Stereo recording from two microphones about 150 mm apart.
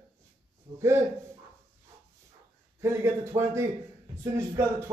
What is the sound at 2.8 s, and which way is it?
A man's voice, 20° right (ahead or behind).